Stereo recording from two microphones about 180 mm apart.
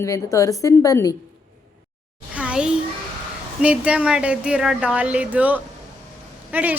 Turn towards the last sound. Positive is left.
turn(degrees=-10)  # may be behind; listen again after turning